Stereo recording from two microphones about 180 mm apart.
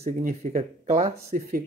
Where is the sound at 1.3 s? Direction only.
55° right (ahead or behind).